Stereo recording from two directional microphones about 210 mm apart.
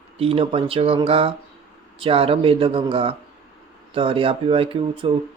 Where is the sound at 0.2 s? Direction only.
25° right (ahead or behind).